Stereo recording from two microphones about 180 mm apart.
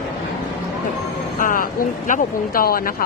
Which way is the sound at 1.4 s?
50° left (ahead or behind).